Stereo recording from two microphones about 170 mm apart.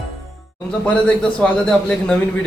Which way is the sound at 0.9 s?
5° left (ahead or behind).